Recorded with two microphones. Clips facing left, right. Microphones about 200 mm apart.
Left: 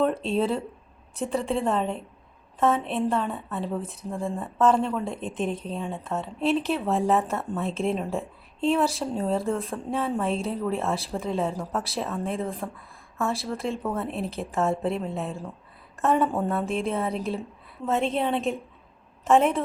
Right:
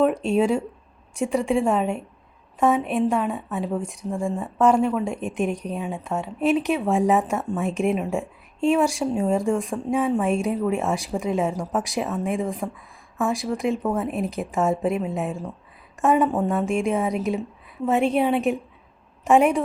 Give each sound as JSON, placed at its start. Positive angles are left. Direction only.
{"t": 0.0, "sound": "a woman's voice", "side_deg": -15}
{"t": 16.4, "sound": "speech", "side_deg": 0}
{"t": 16.6, "sound": "a woman's voice", "side_deg": -15}